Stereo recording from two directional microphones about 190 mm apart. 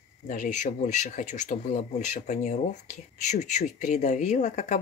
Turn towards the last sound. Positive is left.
turn(degrees=40)  # may be behind; listen again after turning